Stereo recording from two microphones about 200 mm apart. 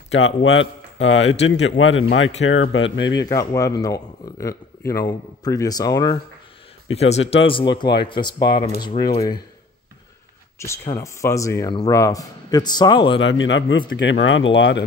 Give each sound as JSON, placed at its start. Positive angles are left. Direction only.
{"t": 0.1, "sound": "speech", "side_deg": 65}
{"t": 3.0, "sound": "speech", "side_deg": 20}
{"t": 6.9, "sound": "speech", "side_deg": 30}
{"t": 10.6, "sound": "speech", "side_deg": 15}
{"t": 13.2, "sound": "speech", "side_deg": 70}